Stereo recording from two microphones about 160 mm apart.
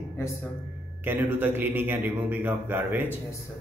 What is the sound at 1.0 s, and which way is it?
A man's voice, 15° right (ahead or behind).